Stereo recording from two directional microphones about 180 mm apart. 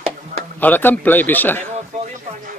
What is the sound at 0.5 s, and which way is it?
A man's voice, 10° left (ahead or behind).